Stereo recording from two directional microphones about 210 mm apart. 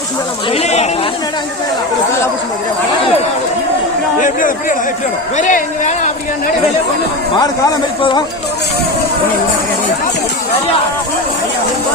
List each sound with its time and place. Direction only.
0.5 s speech: 30° left (ahead or behind)
4.2 s speech: 40° left (ahead or behind)